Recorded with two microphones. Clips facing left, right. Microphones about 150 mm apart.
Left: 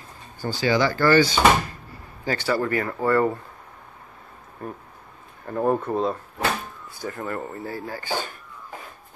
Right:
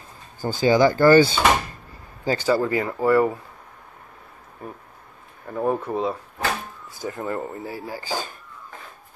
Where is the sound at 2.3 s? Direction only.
15° right (ahead or behind).